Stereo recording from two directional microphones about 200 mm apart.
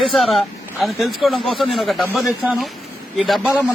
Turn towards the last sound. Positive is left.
turn(degrees=0)  # may be behind; listen again after turning